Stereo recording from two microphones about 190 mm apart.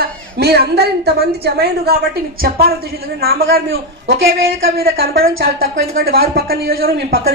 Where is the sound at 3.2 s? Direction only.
50° right (ahead or behind).